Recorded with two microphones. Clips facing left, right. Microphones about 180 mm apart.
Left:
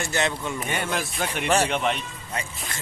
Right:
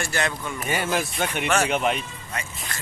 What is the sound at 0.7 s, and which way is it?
Speech, centre (ahead or behind).